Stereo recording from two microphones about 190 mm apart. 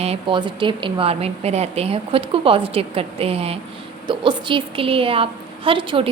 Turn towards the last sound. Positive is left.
turn(degrees=-25)  # may be behind; listen again after turning